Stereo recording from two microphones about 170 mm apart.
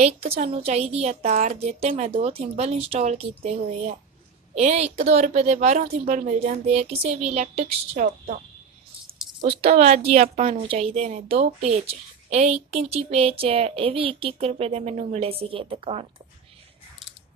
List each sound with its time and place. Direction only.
0.0 s a woman's voice: 40° right (ahead or behind)
9.4 s a woman's voice: 40° right (ahead or behind)